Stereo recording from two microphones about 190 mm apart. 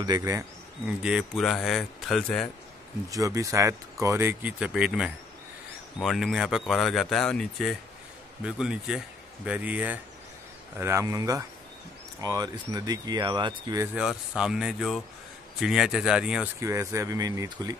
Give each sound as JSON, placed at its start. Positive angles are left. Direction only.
{"t": 0.0, "sound": "speech", "side_deg": -20}
{"t": 0.8, "sound": "speech", "side_deg": -5}
{"t": 3.1, "sound": "speech", "side_deg": -15}
{"t": 13.9, "sound": "speech", "side_deg": -5}